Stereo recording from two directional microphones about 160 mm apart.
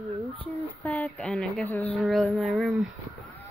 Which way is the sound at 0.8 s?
10° left (ahead or behind).